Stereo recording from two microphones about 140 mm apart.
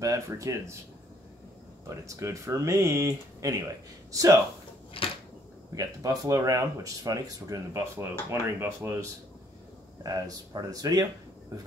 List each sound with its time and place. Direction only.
0.0 s speech: 25° right (ahead or behind)
1.9 s speech: 20° right (ahead or behind)
5.0 s a sound: 40° left (ahead or behind)
5.8 s speech: 25° right (ahead or behind)
10.0 s speech: 25° right (ahead or behind)